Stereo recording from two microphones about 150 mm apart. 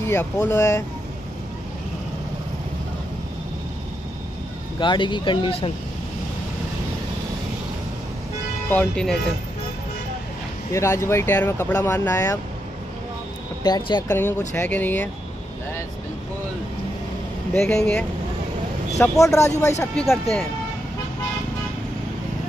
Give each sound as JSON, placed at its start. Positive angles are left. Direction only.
{"t": 0.0, "sound": "speech", "side_deg": 15}
{"t": 4.7, "sound": "speech", "side_deg": 30}
{"t": 8.6, "sound": "speech", "side_deg": 10}
{"t": 10.7, "sound": "speech", "side_deg": 20}
{"t": 13.7, "sound": "speech", "side_deg": 25}
{"t": 14.0, "sound": "speech", "side_deg": 15}
{"t": 17.6, "sound": "speech", "side_deg": 5}
{"t": 18.9, "sound": "speech", "side_deg": 20}
{"t": 20.0, "sound": "speech", "side_deg": 5}